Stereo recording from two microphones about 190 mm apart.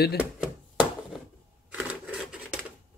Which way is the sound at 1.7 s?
5° right (ahead or behind).